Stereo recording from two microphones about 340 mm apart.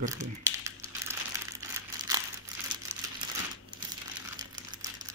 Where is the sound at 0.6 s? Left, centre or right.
Centre.